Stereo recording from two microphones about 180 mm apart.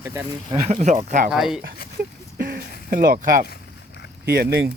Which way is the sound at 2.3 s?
55° right (ahead or behind).